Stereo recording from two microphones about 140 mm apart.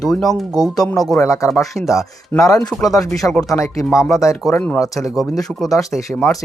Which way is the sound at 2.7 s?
Centre (ahead or behind).